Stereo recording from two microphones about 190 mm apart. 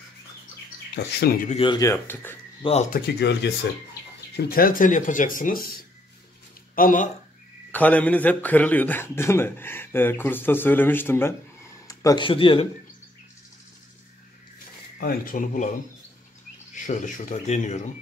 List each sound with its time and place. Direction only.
0.9 s speech: 55° left (ahead or behind)
1.5 s speech: 30° left (ahead or behind)
1.8 s a man's voice: 15° left (ahead or behind)
2.6 s speech: 35° left (ahead or behind)
2.9 s speech: 60° left (ahead or behind)
4.4 s speech: 50° left (ahead or behind)
7.7 s a man's voice: 10° left (ahead or behind); by 12.6 s 30° left (ahead or behind)
15.0 s speech: 50° left (ahead or behind)
16.7 s speech: 40° left (ahead or behind)